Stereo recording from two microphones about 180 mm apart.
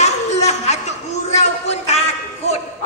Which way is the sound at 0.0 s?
40° left (ahead or behind).